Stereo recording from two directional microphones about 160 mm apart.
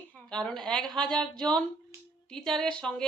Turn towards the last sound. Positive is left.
turn(degrees=5)  # may be behind; listen again after turning